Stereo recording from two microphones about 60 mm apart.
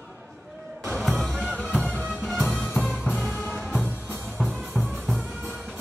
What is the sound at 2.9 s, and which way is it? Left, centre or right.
Music, centre.